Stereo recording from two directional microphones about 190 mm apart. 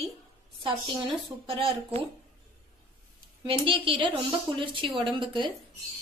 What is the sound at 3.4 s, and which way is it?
A woman's voice, 25° right (ahead or behind).